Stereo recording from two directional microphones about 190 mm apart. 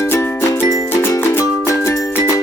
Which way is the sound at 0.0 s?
15° left (ahead or behind).